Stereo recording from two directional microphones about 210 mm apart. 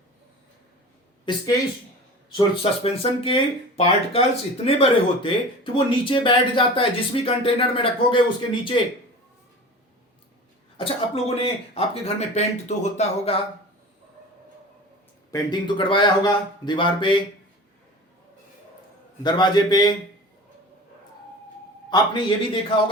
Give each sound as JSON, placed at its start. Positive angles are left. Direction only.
{"t": 1.2, "sound": "speech", "side_deg": 20}
{"t": 10.8, "sound": "speech", "side_deg": 25}
{"t": 15.3, "sound": "speech", "side_deg": 20}
{"t": 19.2, "sound": "speech", "side_deg": 20}
{"t": 21.8, "sound": "a man's voice", "side_deg": 20}